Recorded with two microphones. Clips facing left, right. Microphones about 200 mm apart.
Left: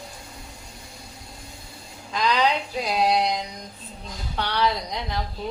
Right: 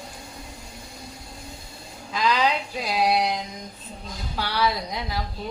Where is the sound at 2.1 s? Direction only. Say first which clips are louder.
Left 1 dB; 5° right (ahead or behind).